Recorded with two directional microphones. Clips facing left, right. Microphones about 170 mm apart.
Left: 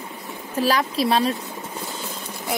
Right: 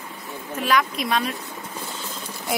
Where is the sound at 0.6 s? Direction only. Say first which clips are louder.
Left 2 dB; 35° left (ahead or behind).